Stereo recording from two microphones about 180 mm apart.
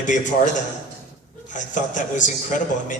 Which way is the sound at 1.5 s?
45° left (ahead or behind).